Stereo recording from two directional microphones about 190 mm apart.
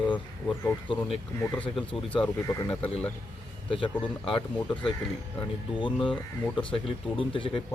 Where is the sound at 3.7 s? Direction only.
25° left (ahead or behind).